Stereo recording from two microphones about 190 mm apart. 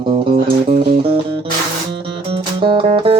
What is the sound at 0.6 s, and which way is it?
Music, 35° right (ahead or behind).